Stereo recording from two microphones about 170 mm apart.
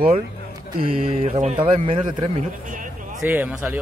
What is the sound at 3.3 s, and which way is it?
Speech, 10° right (ahead or behind).